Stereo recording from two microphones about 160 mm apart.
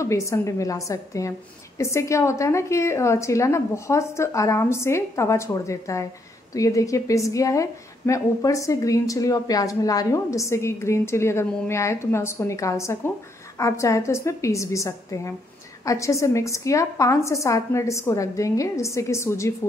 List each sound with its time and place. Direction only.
0.0 s a woman's voice: 20° left (ahead or behind)